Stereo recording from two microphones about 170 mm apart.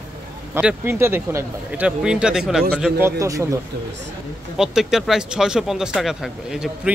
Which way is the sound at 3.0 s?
15° right (ahead or behind).